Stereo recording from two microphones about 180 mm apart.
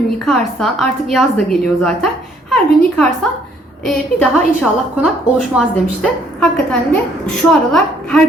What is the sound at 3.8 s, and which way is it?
Speech, centre (ahead or behind).